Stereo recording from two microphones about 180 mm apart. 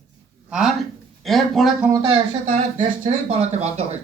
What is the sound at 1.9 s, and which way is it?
Speech, 30° right (ahead or behind).